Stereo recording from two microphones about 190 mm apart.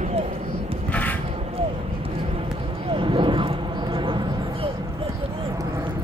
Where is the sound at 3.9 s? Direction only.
25° right (ahead or behind).